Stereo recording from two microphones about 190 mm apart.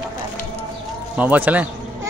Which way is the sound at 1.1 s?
10° right (ahead or behind).